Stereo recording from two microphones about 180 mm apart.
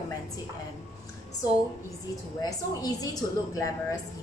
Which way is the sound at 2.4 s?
20° left (ahead or behind).